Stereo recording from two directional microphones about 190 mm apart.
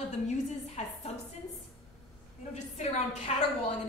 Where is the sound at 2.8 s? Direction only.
35° left (ahead or behind).